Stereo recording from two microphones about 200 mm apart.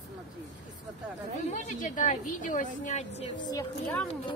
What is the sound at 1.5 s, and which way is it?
A woman's voice, 40° left (ahead or behind).